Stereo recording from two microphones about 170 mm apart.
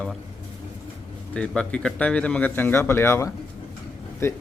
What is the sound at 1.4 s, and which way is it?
A man's voice, 5° left (ahead or behind).